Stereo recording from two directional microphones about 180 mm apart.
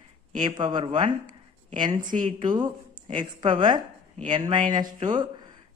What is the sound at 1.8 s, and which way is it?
Speech, 45° right (ahead or behind).